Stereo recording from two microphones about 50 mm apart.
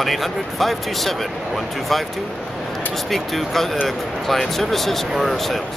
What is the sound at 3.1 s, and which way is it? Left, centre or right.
Speech, centre.